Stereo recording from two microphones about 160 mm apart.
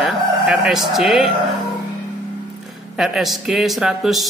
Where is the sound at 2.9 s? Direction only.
Centre (ahead or behind).